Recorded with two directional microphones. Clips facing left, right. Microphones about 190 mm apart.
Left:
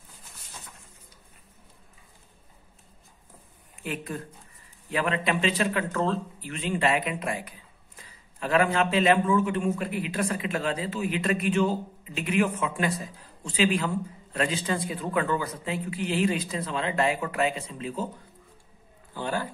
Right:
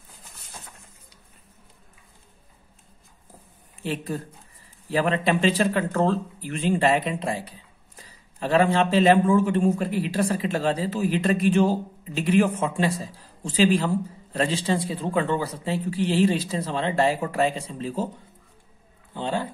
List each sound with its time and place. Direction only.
3.8 s a man's voice: 30° right (ahead or behind)
19.1 s speech: 25° right (ahead or behind)